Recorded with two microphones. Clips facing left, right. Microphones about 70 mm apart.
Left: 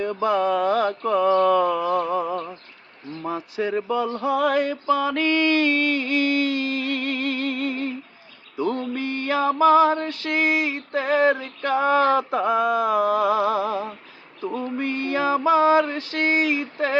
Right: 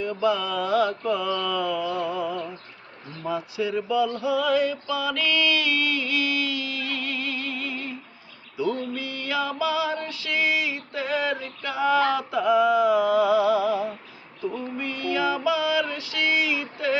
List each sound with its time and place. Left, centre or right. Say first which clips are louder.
0.0 s mantra: left 3 dB; left
3.2 s male singing: left 1 dB; left
8.5 s a sound: left 2 dB; left